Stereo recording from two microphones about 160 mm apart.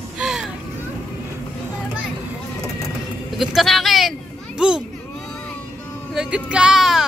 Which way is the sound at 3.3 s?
Centre (ahead or behind).